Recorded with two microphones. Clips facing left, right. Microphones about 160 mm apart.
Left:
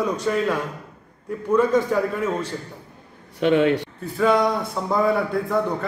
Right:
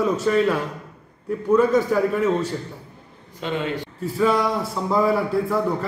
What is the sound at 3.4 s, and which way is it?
Speech, 70° left (ahead or behind).